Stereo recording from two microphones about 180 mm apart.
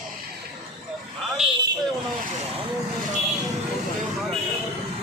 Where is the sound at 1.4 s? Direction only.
Centre (ahead or behind).